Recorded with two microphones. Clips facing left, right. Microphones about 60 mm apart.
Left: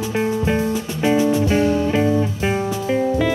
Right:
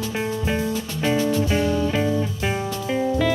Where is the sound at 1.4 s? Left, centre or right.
Left.